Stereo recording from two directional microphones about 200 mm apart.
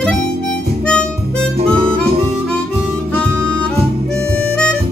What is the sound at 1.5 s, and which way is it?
Harmonica, 30° right (ahead or behind).